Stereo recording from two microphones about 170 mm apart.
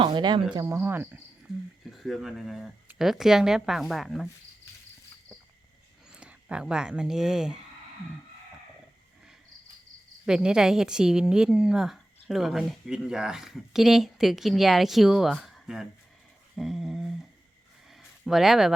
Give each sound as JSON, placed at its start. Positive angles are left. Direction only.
{"t": 0.0, "sound": "speech", "side_deg": -25}
{"t": 1.8, "sound": "a woman's voice", "side_deg": 0}
{"t": 6.1, "sound": "speech", "side_deg": -5}
{"t": 10.2, "sound": "a woman's voice", "side_deg": -5}
{"t": 17.9, "sound": "a sound", "side_deg": 0}